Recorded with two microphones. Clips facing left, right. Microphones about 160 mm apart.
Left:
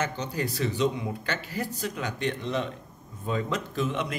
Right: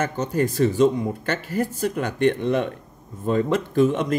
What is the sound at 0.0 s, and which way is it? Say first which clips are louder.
Speech: right 7 dB; 50° right (ahead or behind).